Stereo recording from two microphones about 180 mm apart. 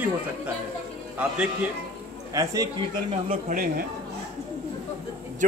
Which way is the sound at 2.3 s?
20° right (ahead or behind).